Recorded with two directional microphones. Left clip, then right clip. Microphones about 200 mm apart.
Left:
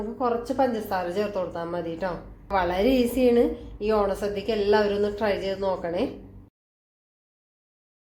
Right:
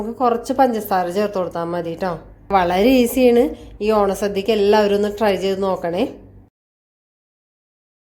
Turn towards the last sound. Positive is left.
turn(degrees=-50)  # may be behind; listen again after turning